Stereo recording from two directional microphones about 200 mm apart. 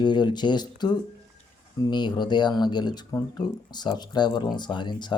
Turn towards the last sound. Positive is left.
turn(degrees=20)  # may be behind; listen again after turning